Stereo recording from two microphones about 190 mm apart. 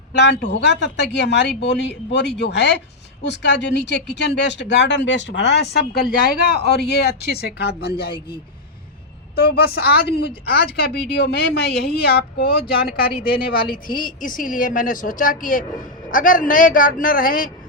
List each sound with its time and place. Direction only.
0.2 s a woman's voice: 65° left (ahead or behind)
9.3 s a woman's voice: 55° left (ahead or behind)